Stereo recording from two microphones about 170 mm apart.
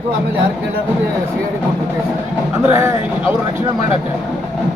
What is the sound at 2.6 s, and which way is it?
Speech, 15° right (ahead or behind).